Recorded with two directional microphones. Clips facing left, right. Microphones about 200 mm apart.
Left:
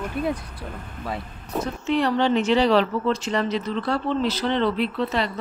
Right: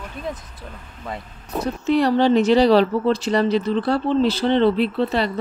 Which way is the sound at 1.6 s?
40° right (ahead or behind).